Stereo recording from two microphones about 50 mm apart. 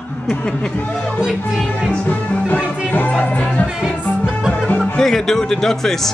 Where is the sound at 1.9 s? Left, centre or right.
Left.